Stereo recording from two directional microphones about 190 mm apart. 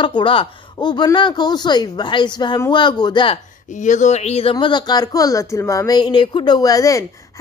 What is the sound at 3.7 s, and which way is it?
Speech, 40° left (ahead or behind).